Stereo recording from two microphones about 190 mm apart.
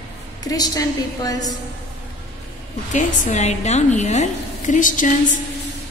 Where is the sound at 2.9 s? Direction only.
40° left (ahead or behind).